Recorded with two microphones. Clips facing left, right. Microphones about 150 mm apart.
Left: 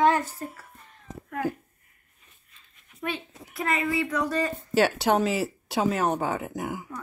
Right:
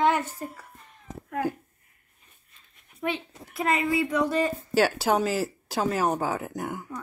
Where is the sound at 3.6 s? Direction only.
20° right (ahead or behind).